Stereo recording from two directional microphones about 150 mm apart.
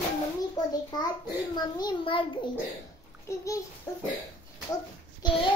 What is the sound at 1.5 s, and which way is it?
Child singing, 30° left (ahead or behind).